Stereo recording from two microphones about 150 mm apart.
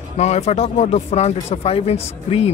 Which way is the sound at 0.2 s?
45° left (ahead or behind).